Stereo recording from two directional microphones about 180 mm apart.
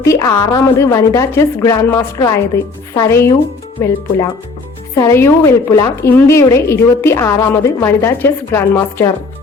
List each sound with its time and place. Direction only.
0.0 s a woman's voice: 20° left (ahead or behind)
4.9 s a woman's voice: 15° left (ahead or behind)